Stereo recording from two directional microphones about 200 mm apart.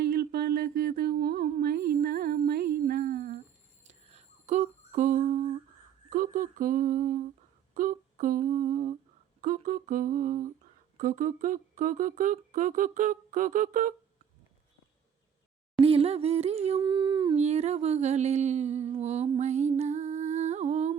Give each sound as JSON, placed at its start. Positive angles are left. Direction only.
{"t": 0.0, "sound": "humming", "side_deg": -50}
{"t": 3.8, "sound": "a sound", "side_deg": -35}
{"t": 6.1, "sound": "humming", "side_deg": -45}
{"t": 10.9, "sound": "speech", "side_deg": -40}
{"t": 15.8, "sound": "a sound", "side_deg": -30}
{"t": 17.3, "sound": "music", "side_deg": -35}